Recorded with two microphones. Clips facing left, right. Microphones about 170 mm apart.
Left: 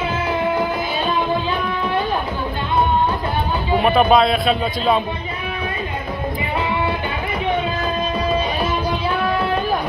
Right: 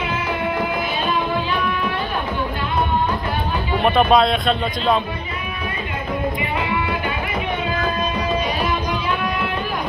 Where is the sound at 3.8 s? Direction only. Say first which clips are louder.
Left 1 dB; centre (ahead or behind).